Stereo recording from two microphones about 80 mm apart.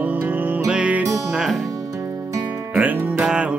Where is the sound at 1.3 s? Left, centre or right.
Centre.